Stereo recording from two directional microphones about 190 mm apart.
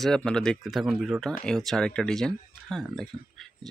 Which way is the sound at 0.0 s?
5° left (ahead or behind).